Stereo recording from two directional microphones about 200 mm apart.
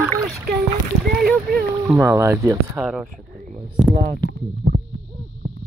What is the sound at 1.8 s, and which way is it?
Speech, 15° right (ahead or behind).